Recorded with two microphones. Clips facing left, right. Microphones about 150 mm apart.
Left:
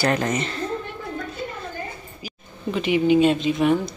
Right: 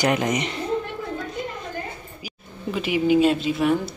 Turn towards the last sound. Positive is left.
turn(degrees=-5)  # may be behind; listen again after turning